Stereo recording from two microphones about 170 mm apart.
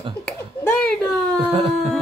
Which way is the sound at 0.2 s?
10° left (ahead or behind).